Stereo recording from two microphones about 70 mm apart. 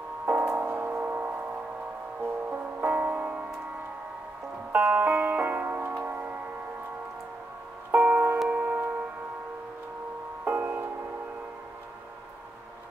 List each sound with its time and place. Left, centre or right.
0.2 s music: centre
2.5 s music: right
4.7 s music: right
7.9 s music: right
10.4 s music: right